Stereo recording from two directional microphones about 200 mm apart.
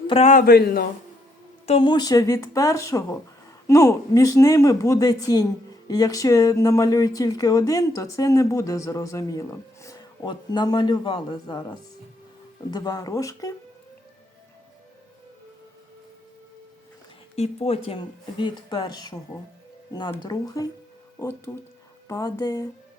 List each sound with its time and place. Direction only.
0.1 s a man's voice: 35° left (ahead or behind); by 0.9 s 50° left (ahead or behind)
1.6 s speech: 25° left (ahead or behind)
17.3 s speech: 30° left (ahead or behind)